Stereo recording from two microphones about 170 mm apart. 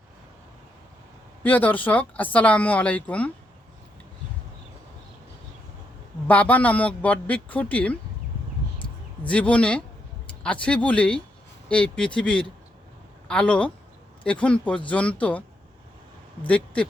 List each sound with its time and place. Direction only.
1.5 s speech: 10° left (ahead or behind)
6.2 s speech: 10° left (ahead or behind)
8.8 s a sound: 30° left (ahead or behind)
9.3 s speech: 10° left (ahead or behind)